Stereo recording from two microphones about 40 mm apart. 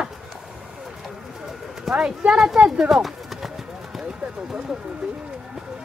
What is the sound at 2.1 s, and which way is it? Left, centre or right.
Speech, centre.